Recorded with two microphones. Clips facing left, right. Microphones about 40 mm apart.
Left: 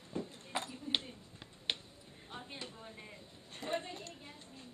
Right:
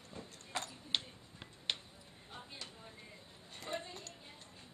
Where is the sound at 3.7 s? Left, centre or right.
Left.